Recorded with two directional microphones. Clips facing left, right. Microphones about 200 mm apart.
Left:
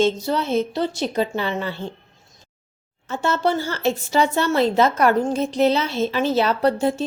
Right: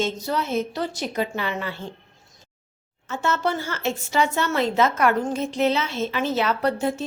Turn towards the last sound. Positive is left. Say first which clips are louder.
# left 4 dB
turn(degrees=30)  # may be behind; listen again after turning